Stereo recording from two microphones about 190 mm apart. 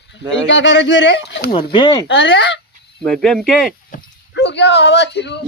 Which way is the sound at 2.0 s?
70° left (ahead or behind).